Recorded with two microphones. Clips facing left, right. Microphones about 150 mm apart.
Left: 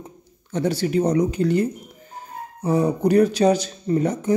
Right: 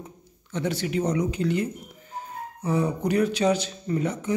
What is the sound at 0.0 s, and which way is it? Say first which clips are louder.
A man's voice: left 2 dB; 35° left (ahead or behind).